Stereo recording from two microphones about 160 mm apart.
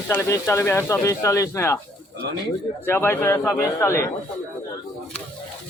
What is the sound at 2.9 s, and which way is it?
Speech, 15° left (ahead or behind).